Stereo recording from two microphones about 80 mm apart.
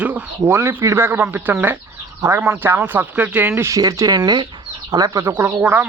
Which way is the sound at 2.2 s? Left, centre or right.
Right.